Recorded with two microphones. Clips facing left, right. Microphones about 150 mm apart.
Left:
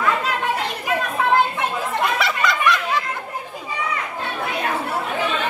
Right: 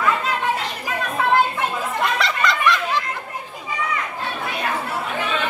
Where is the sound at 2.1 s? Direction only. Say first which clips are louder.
Even; 5° left (ahead or behind).